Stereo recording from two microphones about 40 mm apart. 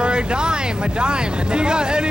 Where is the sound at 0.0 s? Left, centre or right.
Right.